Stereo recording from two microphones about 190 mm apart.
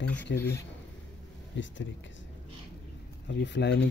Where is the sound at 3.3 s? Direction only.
65° left (ahead or behind).